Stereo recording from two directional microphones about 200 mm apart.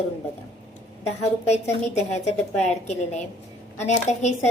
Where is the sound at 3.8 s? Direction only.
35° left (ahead or behind).